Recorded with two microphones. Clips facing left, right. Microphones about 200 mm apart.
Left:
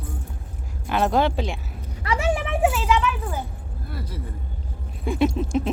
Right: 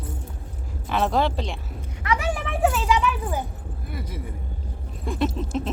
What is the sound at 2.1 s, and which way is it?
Vehicle, 25° left (ahead or behind).